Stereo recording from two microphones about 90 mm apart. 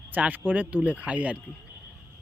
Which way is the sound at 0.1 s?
20° right (ahead or behind).